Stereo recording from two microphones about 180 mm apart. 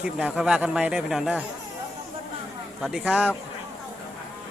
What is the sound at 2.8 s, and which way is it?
Speech, 5° right (ahead or behind).